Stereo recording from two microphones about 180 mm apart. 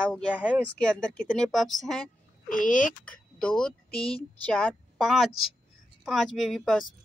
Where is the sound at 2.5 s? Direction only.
45° left (ahead or behind).